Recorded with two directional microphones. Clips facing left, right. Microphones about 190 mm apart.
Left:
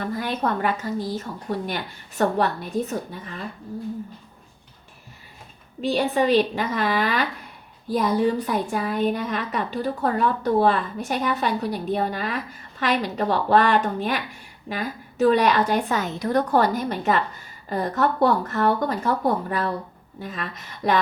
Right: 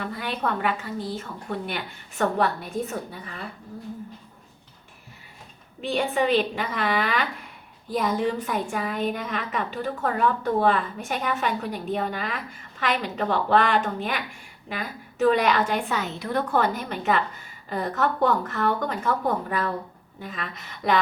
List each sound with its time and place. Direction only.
0.0 s a woman's voice: 40° left (ahead or behind)
5.8 s a woman's voice: 35° left (ahead or behind)